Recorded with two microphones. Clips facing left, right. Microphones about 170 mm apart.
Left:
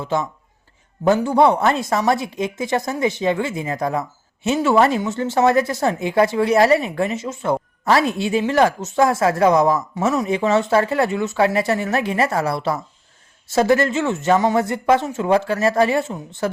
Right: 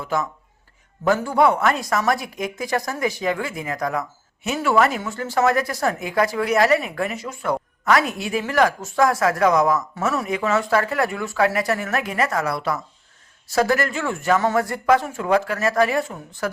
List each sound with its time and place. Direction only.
0.0 s speech: 25° left (ahead or behind)